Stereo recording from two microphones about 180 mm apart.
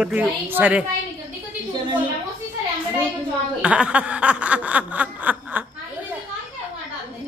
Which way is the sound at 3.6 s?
5° right (ahead or behind).